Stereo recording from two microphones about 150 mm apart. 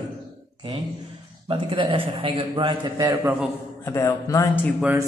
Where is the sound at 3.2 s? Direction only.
10° right (ahead or behind).